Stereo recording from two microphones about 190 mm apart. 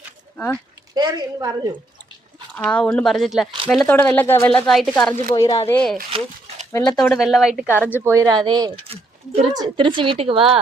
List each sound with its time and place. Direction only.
0.3 s speech: 10° left (ahead or behind)
0.9 s a woman's voice: 20° right (ahead or behind)
2.6 s speech: 5° left (ahead or behind)
5.3 s speech: 25° left (ahead or behind)
5.6 s speech: 5° left (ahead or behind)
6.1 s dog: 30° right (ahead or behind)
6.7 s speech: 15° left (ahead or behind)
7.0 s a woman's voice: centre (ahead or behind); by 10.6 s 30° right (ahead or behind)